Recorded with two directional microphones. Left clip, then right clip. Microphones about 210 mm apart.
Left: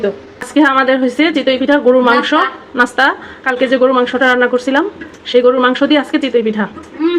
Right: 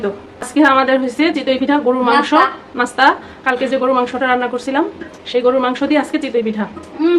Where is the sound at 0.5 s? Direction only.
25° left (ahead or behind).